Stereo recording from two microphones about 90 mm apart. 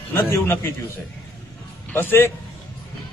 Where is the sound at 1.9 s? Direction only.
25° left (ahead or behind).